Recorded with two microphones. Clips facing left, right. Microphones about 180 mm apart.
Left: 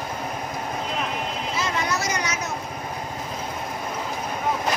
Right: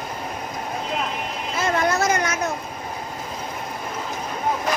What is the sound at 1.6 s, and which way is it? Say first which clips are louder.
Vehicle: right 7 dB; 50° right (ahead or behind).